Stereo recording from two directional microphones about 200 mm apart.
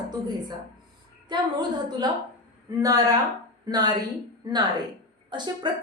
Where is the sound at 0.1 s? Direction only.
20° right (ahead or behind).